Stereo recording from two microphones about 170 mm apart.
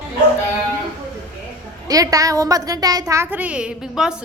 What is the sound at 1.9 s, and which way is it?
A woman's voice, 20° right (ahead or behind).